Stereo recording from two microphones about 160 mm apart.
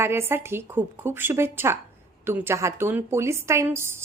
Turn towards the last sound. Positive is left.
turn(degrees=-15)  # may be behind; listen again after turning